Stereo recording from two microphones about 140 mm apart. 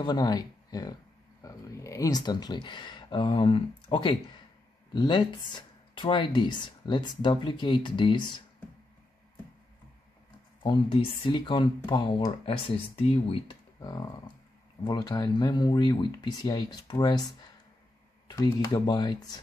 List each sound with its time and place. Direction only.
0.0 s speech: 30° left (ahead or behind)
10.6 s speech: 40° left (ahead or behind)
13.7 s speech: 30° left (ahead or behind)
18.3 s speech: 25° left (ahead or behind)